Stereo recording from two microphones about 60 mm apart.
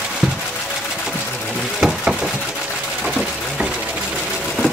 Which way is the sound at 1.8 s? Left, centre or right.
Centre.